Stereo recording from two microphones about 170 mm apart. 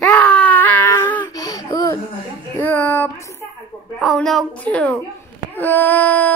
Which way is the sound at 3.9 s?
Centre (ahead or behind).